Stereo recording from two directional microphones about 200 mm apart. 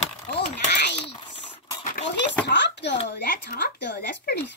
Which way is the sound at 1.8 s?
40° left (ahead or behind).